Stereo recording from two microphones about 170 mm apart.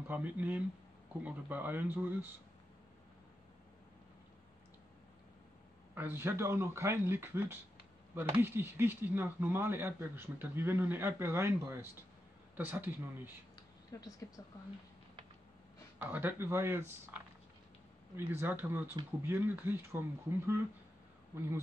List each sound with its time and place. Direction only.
0.1 s speech: 10° right (ahead or behind)
5.9 s speech: 15° right (ahead or behind)
13.9 s speech: 20° left (ahead or behind)
16.0 s speech: 10° right (ahead or behind)